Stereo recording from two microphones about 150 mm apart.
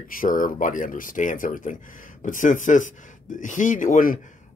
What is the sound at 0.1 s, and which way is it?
Speech, 65° left (ahead or behind).